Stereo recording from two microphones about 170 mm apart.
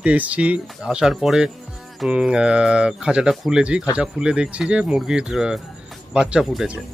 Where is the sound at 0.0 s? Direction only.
10° right (ahead or behind).